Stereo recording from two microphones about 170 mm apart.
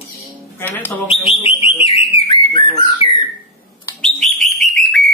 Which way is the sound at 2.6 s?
30° left (ahead or behind).